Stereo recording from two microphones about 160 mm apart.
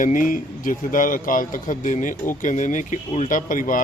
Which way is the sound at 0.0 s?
55° left (ahead or behind).